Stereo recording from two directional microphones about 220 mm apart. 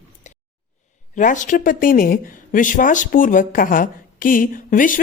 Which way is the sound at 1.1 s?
35° left (ahead or behind).